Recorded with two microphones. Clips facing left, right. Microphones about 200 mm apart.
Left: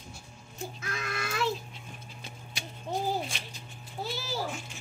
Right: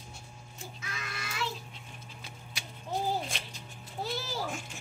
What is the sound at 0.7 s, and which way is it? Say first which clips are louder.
Music: left 6 dB; 50° left (ahead or behind).